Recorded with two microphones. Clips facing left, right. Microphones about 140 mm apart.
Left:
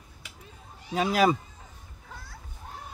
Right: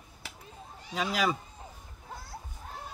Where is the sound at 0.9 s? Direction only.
50° left (ahead or behind).